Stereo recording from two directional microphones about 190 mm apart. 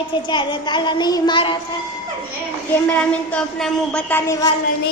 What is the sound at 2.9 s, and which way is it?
A woman's voice, 5° left (ahead or behind).